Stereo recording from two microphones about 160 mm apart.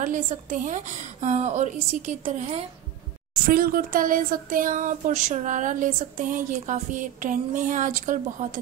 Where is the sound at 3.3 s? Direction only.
65° right (ahead or behind).